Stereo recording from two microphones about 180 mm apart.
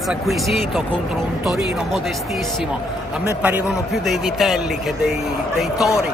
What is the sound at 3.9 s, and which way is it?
Speech, centre (ahead or behind).